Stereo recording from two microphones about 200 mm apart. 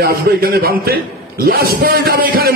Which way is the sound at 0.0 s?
50° right (ahead or behind).